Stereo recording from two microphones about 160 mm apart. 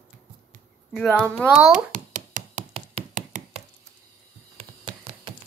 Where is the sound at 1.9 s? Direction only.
50° right (ahead or behind).